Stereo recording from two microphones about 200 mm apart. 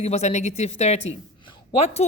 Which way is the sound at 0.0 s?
35° left (ahead or behind).